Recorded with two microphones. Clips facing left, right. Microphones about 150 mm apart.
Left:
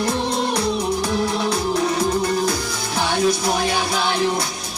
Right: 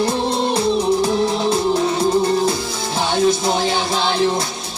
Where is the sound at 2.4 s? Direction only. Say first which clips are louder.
Right 3 dB; 25° right (ahead or behind).